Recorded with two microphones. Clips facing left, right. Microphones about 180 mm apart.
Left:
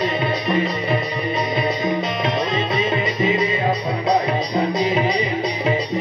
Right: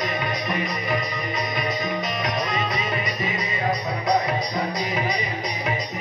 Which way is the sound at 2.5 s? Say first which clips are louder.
Left 6 dB; 25° left (ahead or behind).